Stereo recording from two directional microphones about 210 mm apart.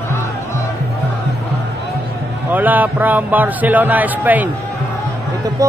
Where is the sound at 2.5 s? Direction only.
10° right (ahead or behind).